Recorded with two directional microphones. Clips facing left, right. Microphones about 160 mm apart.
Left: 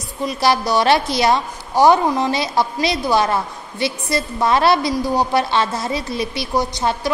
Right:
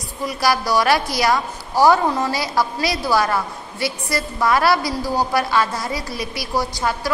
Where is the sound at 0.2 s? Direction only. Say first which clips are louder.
Left 2 dB; 25° left (ahead or behind).